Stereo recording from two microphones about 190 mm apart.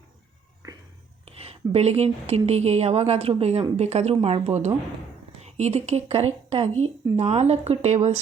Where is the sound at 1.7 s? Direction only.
35° right (ahead or behind).